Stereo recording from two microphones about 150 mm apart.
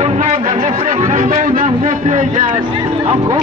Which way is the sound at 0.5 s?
45° right (ahead or behind).